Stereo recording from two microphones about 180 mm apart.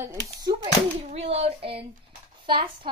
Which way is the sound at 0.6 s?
35° right (ahead or behind).